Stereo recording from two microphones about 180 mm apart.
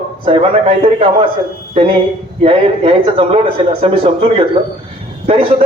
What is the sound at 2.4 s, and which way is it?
A man's voice, 30° right (ahead or behind).